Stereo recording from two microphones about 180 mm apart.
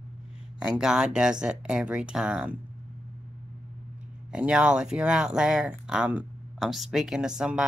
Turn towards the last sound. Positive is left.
turn(degrees=-5)  # may be behind; listen again after turning